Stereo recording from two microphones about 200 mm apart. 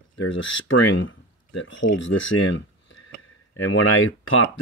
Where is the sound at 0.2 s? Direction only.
70° left (ahead or behind).